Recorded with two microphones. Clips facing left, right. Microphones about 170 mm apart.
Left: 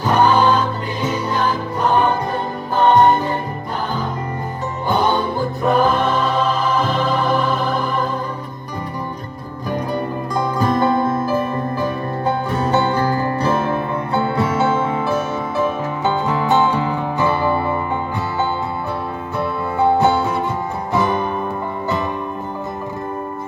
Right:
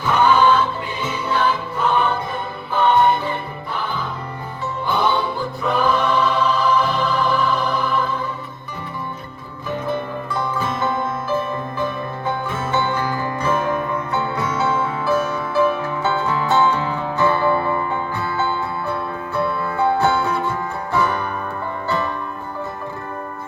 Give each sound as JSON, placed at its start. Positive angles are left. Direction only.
{"t": 0.0, "sound": "choir", "side_deg": 40}
{"t": 1.0, "sound": "music", "side_deg": 40}
{"t": 4.9, "sound": "music", "side_deg": 45}
{"t": 10.4, "sound": "music", "side_deg": 40}
{"t": 12.5, "sound": "music", "side_deg": 40}
{"t": 19.4, "sound": "music", "side_deg": 20}